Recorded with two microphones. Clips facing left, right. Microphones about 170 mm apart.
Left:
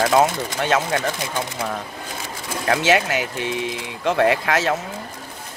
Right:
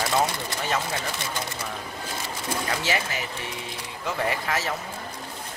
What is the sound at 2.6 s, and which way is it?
Speech, 75° left (ahead or behind).